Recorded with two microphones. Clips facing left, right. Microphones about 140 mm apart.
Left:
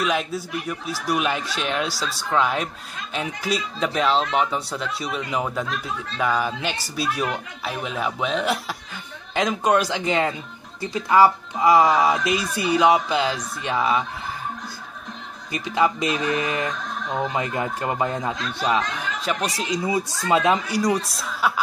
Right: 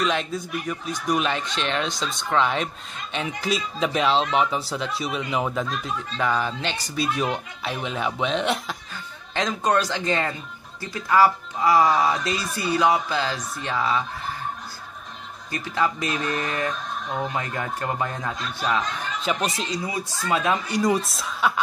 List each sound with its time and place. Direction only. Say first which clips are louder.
0.0 s speech: left 1 dB; 5° left (ahead or behind)
15.5 s speech: left 3 dB; 15° left (ahead or behind)
16.2 s speech: left 3 dB; 90° left
16.4 s speech: left 1 dB; 20° left (ahead or behind)
19.2 s speech: right 1 dB; centre (ahead or behind)
19.8 s speech: left 5 dB; 20° left (ahead or behind)
20.7 s speech: even; centre (ahead or behind)